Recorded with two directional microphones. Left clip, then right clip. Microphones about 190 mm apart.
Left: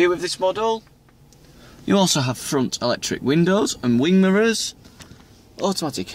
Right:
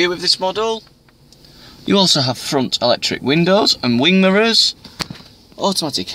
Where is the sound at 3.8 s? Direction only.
Centre (ahead or behind).